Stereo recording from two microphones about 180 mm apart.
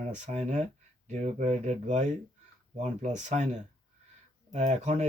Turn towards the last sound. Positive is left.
turn(degrees=-40)  # may be behind; listen again after turning